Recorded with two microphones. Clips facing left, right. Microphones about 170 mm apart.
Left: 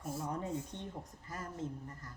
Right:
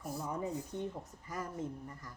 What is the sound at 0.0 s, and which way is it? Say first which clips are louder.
Speech: even; 25° left (ahead or behind).